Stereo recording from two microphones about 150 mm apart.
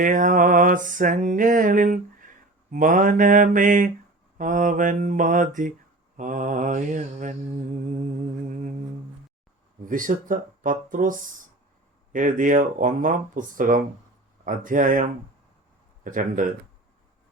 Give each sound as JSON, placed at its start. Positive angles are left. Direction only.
{"t": 0.0, "sound": "mantra", "side_deg": -60}
{"t": 9.8, "sound": "mantra", "side_deg": -65}